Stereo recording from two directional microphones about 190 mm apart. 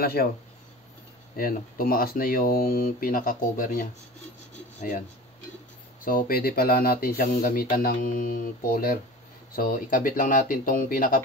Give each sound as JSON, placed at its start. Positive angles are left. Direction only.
{"t": 0.0, "sound": "speech", "side_deg": 55}
{"t": 1.3, "sound": "speech", "side_deg": 50}
{"t": 6.0, "sound": "speech", "side_deg": 50}